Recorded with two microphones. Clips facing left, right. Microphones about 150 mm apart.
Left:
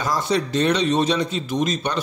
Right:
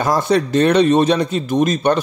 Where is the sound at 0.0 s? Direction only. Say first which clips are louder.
Right 6 dB; 55° right (ahead or behind).